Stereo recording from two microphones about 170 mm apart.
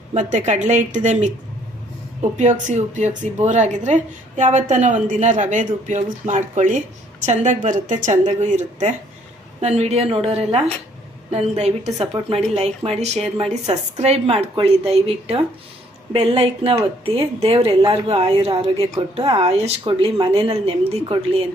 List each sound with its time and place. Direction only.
0.1 s speech: 45° right (ahead or behind)
2.4 s a woman's voice: 45° right (ahead or behind)